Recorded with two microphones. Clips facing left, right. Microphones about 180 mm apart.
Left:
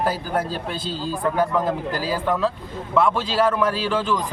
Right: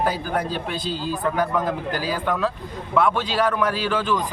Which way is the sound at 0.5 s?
30° left (ahead or behind).